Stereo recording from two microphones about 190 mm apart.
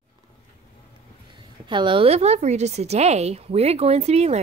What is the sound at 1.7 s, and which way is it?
A woman's voice, 25° right (ahead or behind).